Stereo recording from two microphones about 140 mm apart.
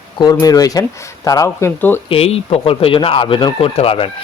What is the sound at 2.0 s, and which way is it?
Speech, 45° left (ahead or behind).